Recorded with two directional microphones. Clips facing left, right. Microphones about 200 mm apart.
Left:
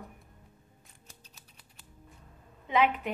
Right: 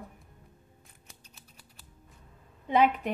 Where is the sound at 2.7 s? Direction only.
35° right (ahead or behind).